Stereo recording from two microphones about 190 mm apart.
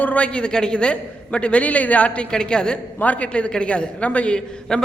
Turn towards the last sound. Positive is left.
turn(degrees=5)  # may be behind; listen again after turning